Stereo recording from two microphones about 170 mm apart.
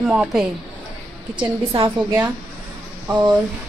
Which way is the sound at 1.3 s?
30° right (ahead or behind).